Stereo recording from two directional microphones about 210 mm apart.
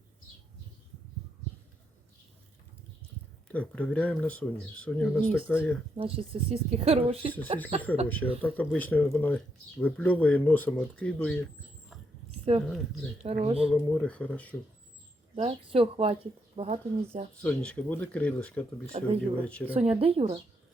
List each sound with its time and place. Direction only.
3.5 s speech: 5° left (ahead or behind)
6.0 s speech: 25° right (ahead or behind)
8.0 s speech: 10° left (ahead or behind)
12.6 s speech: 5° left (ahead or behind)
13.2 s speech: 30° right (ahead or behind)
13.7 s speech: 5° left (ahead or behind)
15.4 s speech: 25° right (ahead or behind)
17.4 s speech: 5° left (ahead or behind)
18.9 s speech: 30° right (ahead or behind)
19.5 s speech: 5° left (ahead or behind)
19.7 s speech: 30° right (ahead or behind)